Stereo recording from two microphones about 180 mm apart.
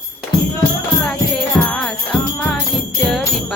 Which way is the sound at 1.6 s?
5° left (ahead or behind).